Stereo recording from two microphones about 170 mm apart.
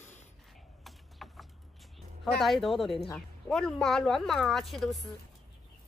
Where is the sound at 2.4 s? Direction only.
Centre (ahead or behind).